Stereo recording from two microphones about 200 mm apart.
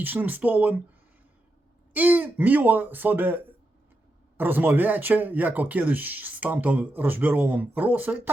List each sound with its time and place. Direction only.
0.0 s speech: 10° right (ahead or behind)
1.9 s speech: 10° right (ahead or behind)